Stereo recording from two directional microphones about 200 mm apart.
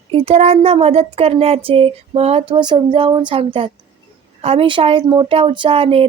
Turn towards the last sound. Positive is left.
turn(degrees=-30)  # may be behind; listen again after turning